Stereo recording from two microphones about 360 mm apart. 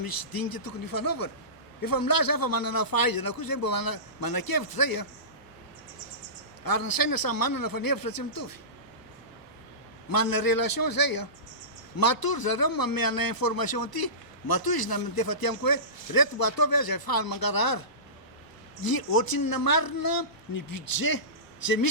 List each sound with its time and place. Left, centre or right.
0.0 s a man's voice: left
6.7 s a man's voice: left
10.1 s a man's voice: left